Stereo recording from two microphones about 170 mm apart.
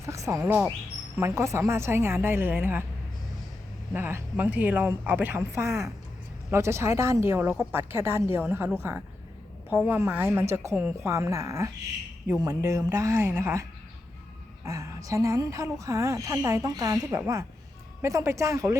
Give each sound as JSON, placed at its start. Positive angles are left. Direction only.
{"t": 0.0, "sound": "a woman's voice", "side_deg": -15}
{"t": 3.9, "sound": "a woman's voice", "side_deg": -10}